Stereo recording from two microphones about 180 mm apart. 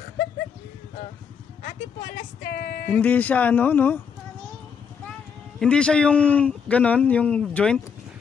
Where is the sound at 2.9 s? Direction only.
10° left (ahead or behind).